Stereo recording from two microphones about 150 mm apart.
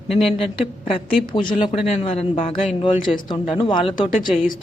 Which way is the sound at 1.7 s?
45° left (ahead or behind).